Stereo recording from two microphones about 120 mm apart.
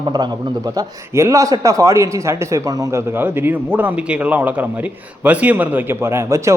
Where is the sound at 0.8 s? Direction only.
25° right (ahead or behind).